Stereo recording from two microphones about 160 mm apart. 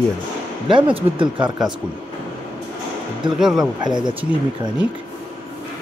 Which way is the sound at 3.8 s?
25° right (ahead or behind).